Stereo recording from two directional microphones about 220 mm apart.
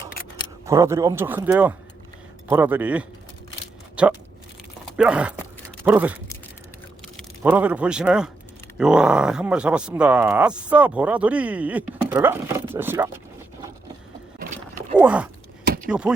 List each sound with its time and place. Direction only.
0.6 s speech: 15° right (ahead or behind)
7.4 s speech: 5° right (ahead or behind)
14.9 s speech: 5° right (ahead or behind)
15.6 s a sound: 45° right (ahead or behind)
15.9 s speech: 5° right (ahead or behind)